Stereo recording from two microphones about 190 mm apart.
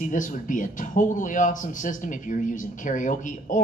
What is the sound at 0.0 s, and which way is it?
Speech, 40° left (ahead or behind).